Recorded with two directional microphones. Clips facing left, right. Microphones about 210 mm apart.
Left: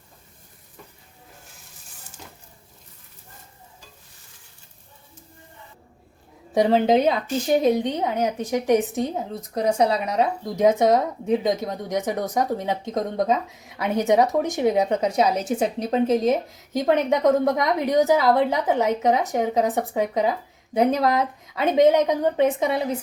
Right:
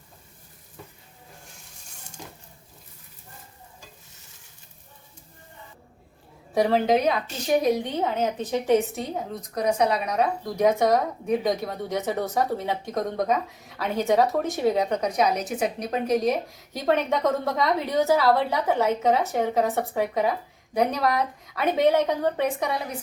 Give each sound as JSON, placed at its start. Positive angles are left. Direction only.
{"t": 6.5, "sound": "a woman's voice", "side_deg": 20}
{"t": 9.6, "sound": "speech", "side_deg": 30}